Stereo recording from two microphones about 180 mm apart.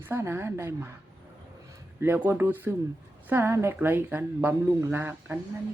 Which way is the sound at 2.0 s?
15° right (ahead or behind).